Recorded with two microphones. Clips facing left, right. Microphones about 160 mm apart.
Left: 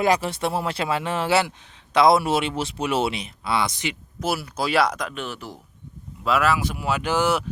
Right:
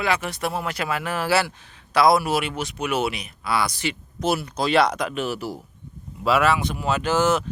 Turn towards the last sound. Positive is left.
turn(degrees=10)  # may be behind; listen again after turning